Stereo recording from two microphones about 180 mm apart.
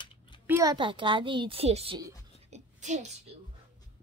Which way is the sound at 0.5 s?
20° right (ahead or behind).